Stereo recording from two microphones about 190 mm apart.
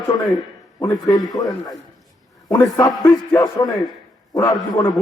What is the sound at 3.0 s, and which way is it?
Speech, 20° left (ahead or behind).